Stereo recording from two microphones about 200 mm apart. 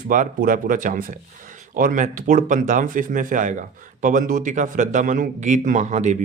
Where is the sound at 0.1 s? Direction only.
40° right (ahead or behind).